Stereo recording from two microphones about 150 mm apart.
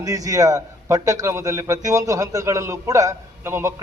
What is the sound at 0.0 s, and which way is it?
A man's voice, 25° right (ahead or behind).